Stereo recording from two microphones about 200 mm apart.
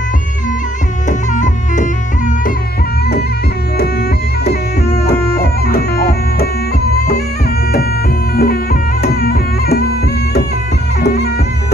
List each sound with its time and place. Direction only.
1.0 s music: 40° left (ahead or behind)
4.5 s music: 50° left (ahead or behind)
8.4 s music: 50° left (ahead or behind)
11.0 s music: 55° left (ahead or behind)